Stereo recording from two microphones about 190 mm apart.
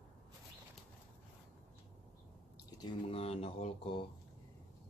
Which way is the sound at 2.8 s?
30° left (ahead or behind).